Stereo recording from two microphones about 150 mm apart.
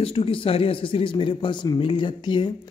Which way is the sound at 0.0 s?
40° left (ahead or behind).